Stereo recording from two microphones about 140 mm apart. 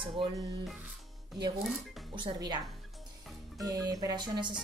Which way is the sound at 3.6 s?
25° right (ahead or behind).